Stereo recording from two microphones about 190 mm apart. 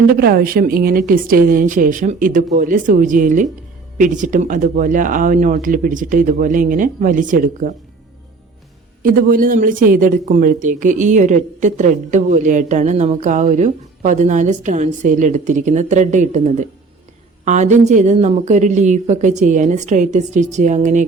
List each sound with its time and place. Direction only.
0.1 s speech: 55° right (ahead or behind)
9.0 s speech: 50° right (ahead or behind)